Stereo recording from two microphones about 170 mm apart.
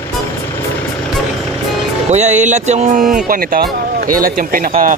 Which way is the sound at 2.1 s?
45° right (ahead or behind).